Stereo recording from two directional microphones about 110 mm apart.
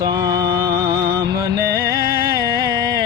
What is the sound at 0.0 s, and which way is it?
Music, 40° right (ahead or behind).